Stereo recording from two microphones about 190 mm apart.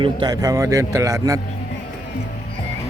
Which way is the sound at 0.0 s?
20° right (ahead or behind).